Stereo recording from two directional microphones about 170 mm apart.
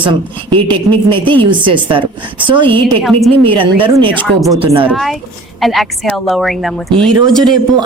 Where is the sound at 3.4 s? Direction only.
30° right (ahead or behind).